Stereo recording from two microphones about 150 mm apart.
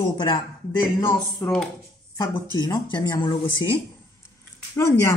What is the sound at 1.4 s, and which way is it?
Speech, 15° left (ahead or behind).